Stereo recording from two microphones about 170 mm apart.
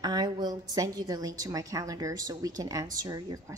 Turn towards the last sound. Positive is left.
turn(degrees=-20)  # may be behind; listen again after turning